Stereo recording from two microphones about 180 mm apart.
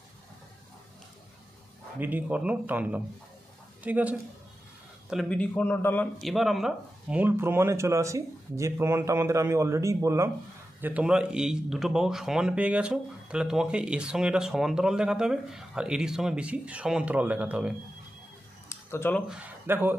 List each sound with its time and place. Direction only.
2.0 s speech: 10° right (ahead or behind)
5.1 s a man's voice: 5° left (ahead or behind)
6.2 s speech: centre (ahead or behind)
18.9 s a man's voice: 10° left (ahead or behind)
19.2 s speech: 5° right (ahead or behind)